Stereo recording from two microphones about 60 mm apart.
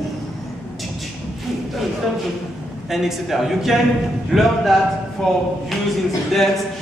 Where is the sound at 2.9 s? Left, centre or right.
Centre.